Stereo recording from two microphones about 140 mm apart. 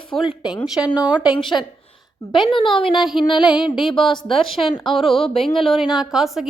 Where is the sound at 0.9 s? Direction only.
30° left (ahead or behind).